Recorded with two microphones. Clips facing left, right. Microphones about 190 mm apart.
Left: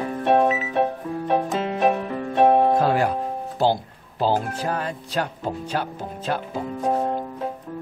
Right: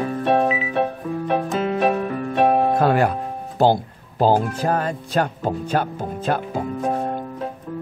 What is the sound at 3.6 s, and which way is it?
Speech, 50° right (ahead or behind).